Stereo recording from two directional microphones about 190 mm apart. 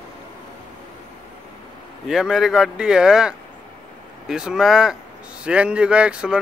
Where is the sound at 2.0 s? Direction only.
Centre (ahead or behind).